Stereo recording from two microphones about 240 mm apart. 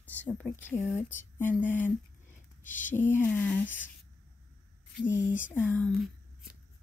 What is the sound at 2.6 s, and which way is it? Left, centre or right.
Speech, left.